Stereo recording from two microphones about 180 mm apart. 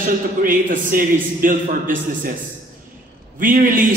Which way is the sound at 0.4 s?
50° right (ahead or behind).